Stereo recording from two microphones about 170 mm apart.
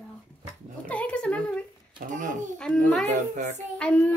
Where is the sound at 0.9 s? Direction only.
5° left (ahead or behind).